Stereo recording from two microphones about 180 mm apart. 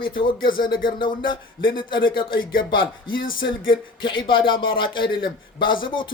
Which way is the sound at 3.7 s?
25° left (ahead or behind).